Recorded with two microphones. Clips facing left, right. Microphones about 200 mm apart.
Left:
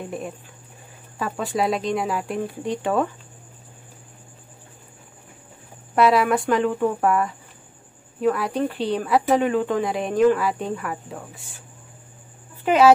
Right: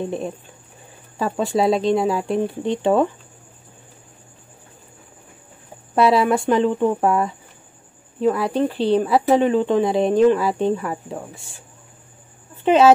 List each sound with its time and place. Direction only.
1.1 s speech: 25° right (ahead or behind)
5.9 s speech: 30° right (ahead or behind)
12.6 s speech: 25° right (ahead or behind)